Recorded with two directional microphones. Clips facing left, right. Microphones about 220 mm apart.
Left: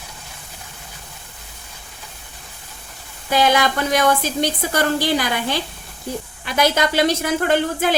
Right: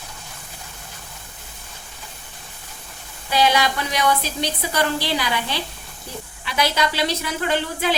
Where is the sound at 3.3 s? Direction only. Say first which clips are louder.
Left 2 dB; 50° left (ahead or behind).